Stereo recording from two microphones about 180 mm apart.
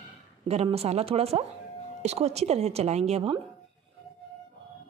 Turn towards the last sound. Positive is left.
turn(degrees=-35)  # may be behind; listen again after turning